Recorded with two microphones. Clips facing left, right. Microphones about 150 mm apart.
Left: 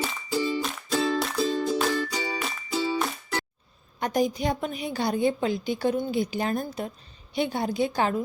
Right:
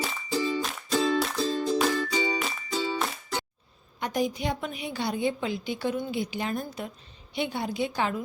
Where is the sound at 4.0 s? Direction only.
40° left (ahead or behind).